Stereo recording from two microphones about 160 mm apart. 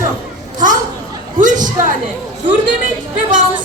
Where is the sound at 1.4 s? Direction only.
55° right (ahead or behind).